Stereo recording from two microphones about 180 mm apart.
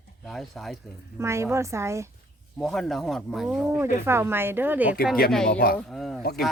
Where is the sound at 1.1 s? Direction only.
15° right (ahead or behind).